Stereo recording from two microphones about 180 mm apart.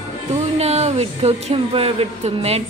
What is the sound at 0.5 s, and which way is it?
A woman's voice, 35° right (ahead or behind).